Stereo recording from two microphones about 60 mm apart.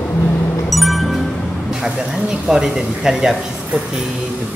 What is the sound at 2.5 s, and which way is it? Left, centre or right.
Speech, centre.